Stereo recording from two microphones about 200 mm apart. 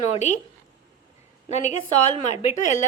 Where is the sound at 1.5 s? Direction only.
35° left (ahead or behind).